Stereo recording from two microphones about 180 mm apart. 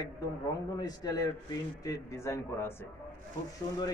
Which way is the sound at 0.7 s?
20° left (ahead or behind).